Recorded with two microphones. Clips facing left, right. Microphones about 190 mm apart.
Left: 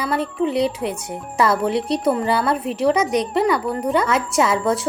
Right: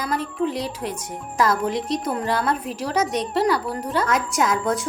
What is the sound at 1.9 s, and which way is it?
A woman's voice, centre (ahead or behind).